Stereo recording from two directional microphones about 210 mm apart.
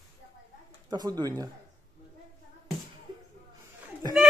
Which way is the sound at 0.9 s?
20° right (ahead or behind).